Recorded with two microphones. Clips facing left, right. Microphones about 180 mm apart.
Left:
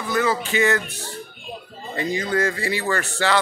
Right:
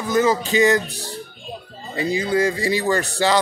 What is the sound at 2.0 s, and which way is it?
Speech, 10° right (ahead or behind).